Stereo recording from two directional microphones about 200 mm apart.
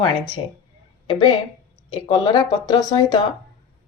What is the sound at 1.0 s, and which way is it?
Speech, 25° left (ahead or behind).